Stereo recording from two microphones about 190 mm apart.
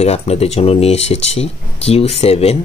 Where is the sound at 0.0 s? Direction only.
35° left (ahead or behind).